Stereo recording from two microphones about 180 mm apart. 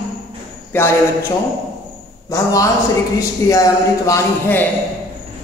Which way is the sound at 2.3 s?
20° left (ahead or behind).